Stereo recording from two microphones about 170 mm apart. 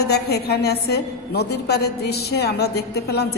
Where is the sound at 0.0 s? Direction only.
70° left (ahead or behind).